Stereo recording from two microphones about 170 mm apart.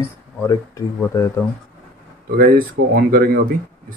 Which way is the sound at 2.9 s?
65° right (ahead or behind).